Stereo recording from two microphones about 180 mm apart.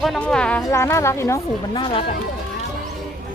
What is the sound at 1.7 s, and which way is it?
Speech, 30° left (ahead or behind).